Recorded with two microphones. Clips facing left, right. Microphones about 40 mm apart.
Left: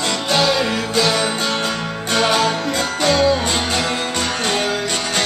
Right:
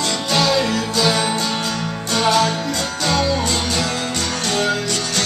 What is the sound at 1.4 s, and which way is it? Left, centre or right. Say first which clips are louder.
Music: left 1 dB; left.